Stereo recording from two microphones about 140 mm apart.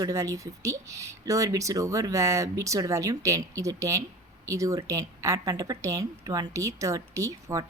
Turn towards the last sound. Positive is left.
turn(degrees=-20)  # may be behind; listen again after turning